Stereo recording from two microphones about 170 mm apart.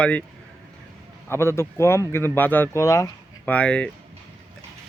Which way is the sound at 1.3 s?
15° left (ahead or behind).